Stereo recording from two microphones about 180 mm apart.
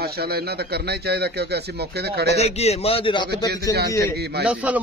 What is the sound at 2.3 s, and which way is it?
A man's voice, 35° left (ahead or behind).